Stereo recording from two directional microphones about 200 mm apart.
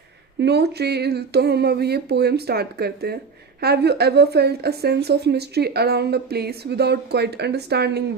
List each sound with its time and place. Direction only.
0.3 s a woman's voice: 55° right (ahead or behind)